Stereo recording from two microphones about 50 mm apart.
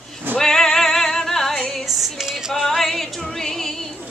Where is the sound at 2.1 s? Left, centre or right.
Centre.